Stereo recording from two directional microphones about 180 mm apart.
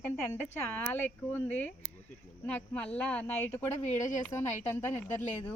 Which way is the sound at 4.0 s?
45° left (ahead or behind).